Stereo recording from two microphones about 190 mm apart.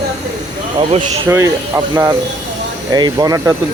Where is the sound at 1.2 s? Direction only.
15° right (ahead or behind).